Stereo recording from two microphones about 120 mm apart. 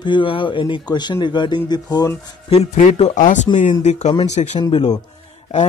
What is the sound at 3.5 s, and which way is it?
Speech, 80° left.